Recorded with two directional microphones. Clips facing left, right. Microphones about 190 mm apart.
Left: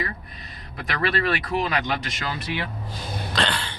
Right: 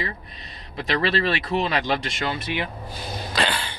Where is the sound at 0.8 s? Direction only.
25° right (ahead or behind).